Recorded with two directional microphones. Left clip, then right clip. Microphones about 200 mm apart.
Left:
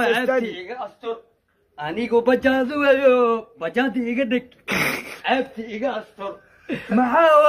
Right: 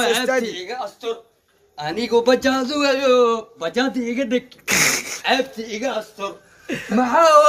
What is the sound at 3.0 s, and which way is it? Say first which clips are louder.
Speech: right 1 dB; centre (ahead or behind).